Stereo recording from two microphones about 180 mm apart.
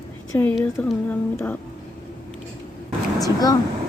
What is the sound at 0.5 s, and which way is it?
Speech, 5° left (ahead or behind).